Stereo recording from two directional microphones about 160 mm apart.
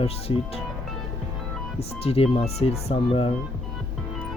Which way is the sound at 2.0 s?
40° left (ahead or behind).